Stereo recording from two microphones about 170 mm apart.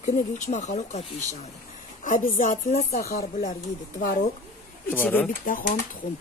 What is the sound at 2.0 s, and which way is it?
Speech, 50° left (ahead or behind).